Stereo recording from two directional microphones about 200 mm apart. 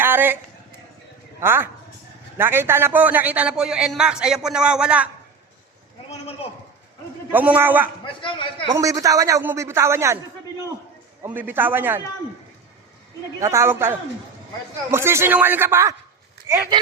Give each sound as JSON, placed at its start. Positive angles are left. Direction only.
{"t": 0.0, "sound": "a sound", "side_deg": -10}
{"t": 1.4, "sound": "a man's voice", "side_deg": -10}
{"t": 6.1, "sound": "a man's voice", "side_deg": 30}
{"t": 7.3, "sound": "speech", "side_deg": -10}
{"t": 8.0, "sound": "a man's voice", "side_deg": 25}
{"t": 8.6, "sound": "speech", "side_deg": -15}
{"t": 11.2, "sound": "speech", "side_deg": -10}
{"t": 13.4, "sound": "speech", "side_deg": -15}